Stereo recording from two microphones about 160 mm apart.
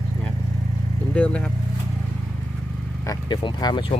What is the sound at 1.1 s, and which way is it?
Speech, 5° left (ahead or behind).